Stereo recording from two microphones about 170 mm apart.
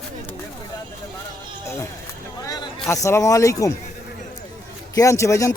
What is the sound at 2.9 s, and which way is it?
Speech, 15° left (ahead or behind).